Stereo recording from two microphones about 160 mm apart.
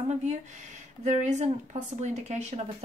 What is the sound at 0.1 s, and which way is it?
A woman's voice, 45° right (ahead or behind).